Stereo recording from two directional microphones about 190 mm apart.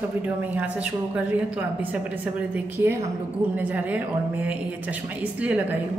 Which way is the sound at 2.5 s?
10° right (ahead or behind).